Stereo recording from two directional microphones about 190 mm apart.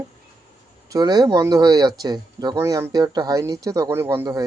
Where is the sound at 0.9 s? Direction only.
20° right (ahead or behind).